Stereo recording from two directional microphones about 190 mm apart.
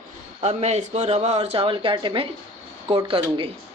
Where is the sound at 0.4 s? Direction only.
35° right (ahead or behind).